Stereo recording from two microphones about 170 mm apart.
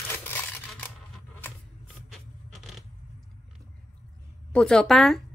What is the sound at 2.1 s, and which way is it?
Scrape, centre (ahead or behind).